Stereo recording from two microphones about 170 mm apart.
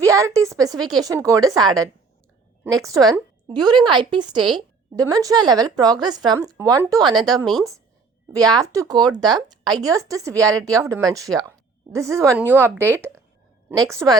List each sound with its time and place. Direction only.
0.0 s a woman's voice: 20° right (ahead or behind)
7.4 s speech: centre (ahead or behind)
8.3 s a woman's voice: 20° right (ahead or behind)